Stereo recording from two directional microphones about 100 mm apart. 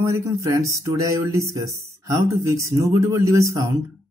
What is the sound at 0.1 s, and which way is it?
Speech, 35° right (ahead or behind).